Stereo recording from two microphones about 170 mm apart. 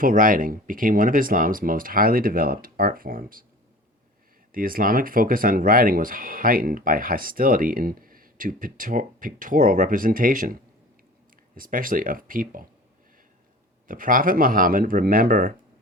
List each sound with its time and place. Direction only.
0.0 s speech: 55° right (ahead or behind)
4.5 s speech: 55° right (ahead or behind)
13.8 s speech: 55° right (ahead or behind)